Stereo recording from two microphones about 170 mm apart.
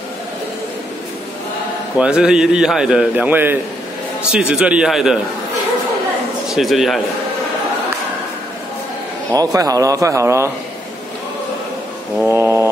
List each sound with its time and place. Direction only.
2.0 s a man's voice: 5° right (ahead or behind)
6.5 s a man's voice: centre (ahead or behind)
9.3 s speech: 20° right (ahead or behind)
12.2 s mantra: 15° right (ahead or behind)